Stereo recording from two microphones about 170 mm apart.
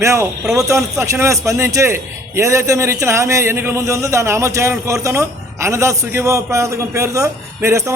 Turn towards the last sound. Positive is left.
turn(degrees=-15)  # may be behind; listen again after turning